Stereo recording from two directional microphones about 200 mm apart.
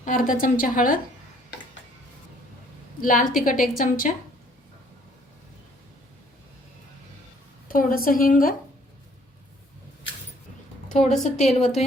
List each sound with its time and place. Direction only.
0.0 s a woman's voice: 40° left (ahead or behind)
3.0 s a woman's voice: 40° left (ahead or behind)
7.7 s a woman's voice: 45° left (ahead or behind)
11.2 s a woman's voice: 35° left (ahead or behind)